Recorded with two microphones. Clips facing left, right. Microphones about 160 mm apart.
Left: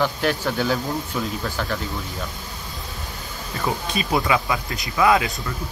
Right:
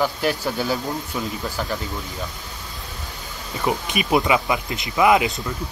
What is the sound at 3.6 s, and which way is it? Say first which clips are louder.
Speech: right 2 dB; 15° right (ahead or behind).